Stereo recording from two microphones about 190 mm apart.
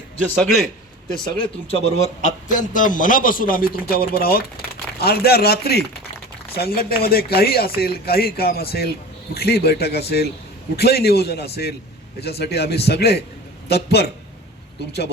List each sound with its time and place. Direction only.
0.4 s a man's voice: centre (ahead or behind)
1.4 s a man's voice: 30° left (ahead or behind); by 14.1 s 60° left (ahead or behind)